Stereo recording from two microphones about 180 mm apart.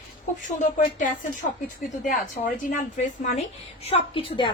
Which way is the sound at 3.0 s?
45° left (ahead or behind).